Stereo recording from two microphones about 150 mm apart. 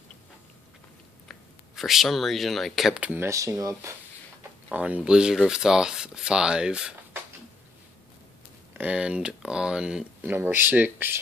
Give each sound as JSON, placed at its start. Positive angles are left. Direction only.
{"t": 1.3, "sound": "speech", "side_deg": 0}
{"t": 4.6, "sound": "speech", "side_deg": -10}
{"t": 8.7, "sound": "speech", "side_deg": -10}